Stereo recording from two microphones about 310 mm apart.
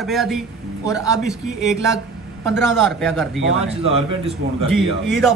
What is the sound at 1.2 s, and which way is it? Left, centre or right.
A man's voice, centre.